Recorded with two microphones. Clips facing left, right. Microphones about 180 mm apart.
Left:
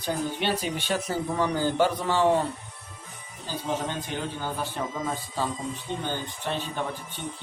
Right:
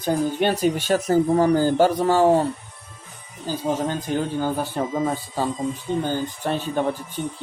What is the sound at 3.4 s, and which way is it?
Speech, 45° right (ahead or behind).